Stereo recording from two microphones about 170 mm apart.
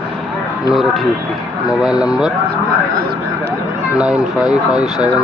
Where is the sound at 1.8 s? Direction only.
5° right (ahead or behind).